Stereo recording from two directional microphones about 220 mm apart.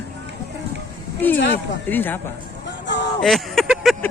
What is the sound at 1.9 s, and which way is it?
Speech, 10° left (ahead or behind).